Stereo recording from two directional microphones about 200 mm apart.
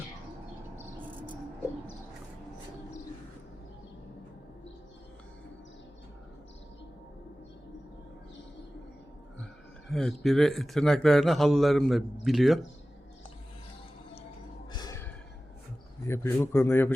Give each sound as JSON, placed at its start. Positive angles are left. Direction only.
{"t": 9.9, "sound": "speech", "side_deg": 0}
{"t": 14.7, "sound": "a sound", "side_deg": 20}
{"t": 16.0, "sound": "a man's voice", "side_deg": 10}